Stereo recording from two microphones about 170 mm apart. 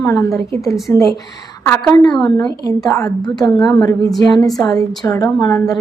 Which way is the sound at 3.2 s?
20° left (ahead or behind).